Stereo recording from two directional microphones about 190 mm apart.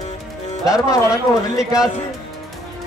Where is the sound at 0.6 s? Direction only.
20° left (ahead or behind).